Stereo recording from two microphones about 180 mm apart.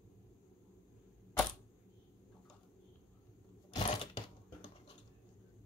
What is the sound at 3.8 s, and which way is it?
Sewing machine, 35° left (ahead or behind).